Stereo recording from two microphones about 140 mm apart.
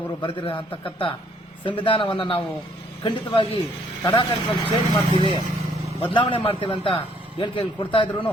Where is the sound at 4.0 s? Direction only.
25° left (ahead or behind).